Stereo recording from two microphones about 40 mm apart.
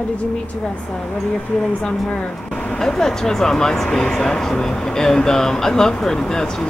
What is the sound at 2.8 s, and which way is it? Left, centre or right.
Speech, centre.